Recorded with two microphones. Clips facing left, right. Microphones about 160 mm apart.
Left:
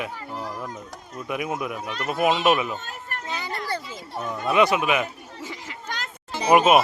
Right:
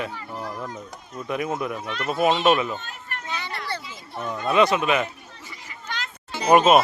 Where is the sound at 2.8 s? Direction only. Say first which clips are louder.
Left 2 dB; 45° left (ahead or behind).